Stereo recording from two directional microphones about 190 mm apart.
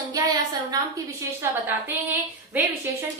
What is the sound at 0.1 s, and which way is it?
A woman's voice, 20° right (ahead or behind).